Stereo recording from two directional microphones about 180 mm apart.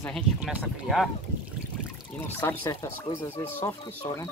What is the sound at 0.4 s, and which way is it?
Speech, 10° right (ahead or behind).